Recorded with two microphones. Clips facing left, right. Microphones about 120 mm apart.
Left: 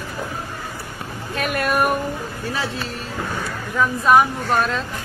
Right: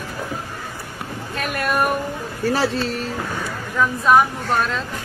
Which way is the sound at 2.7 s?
90° right.